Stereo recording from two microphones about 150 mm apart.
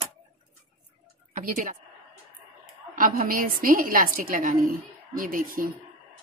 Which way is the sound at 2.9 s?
70° right (ahead or behind).